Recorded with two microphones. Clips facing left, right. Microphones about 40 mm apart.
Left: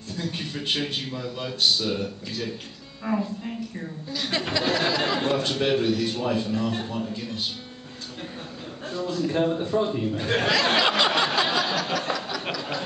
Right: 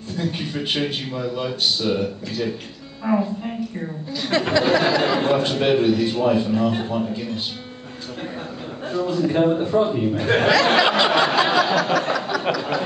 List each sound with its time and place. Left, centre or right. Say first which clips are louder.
0.2 s a man's voice: right 5 dB; centre
4.1 s a man's voice: right 7 dB; centre
8.8 s a man's voice: right 6 dB; centre
10.5 s a sound: right 4 dB; centre